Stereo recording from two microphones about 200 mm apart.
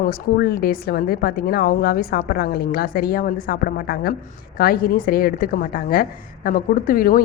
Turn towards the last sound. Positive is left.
turn(degrees=45)  # may be behind; listen again after turning